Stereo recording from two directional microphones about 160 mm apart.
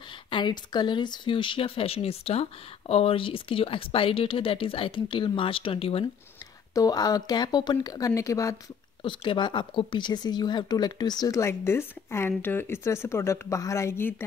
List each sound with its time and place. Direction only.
0.3 s speech: 30° left (ahead or behind)
6.7 s speech: 25° left (ahead or behind)
9.0 s speech: 30° left (ahead or behind); by 14.1 s 15° left (ahead or behind)